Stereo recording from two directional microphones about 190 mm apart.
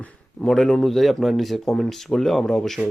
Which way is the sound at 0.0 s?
5° left (ahead or behind).